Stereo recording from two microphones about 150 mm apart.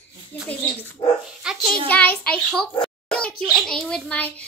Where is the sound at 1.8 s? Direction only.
10° left (ahead or behind).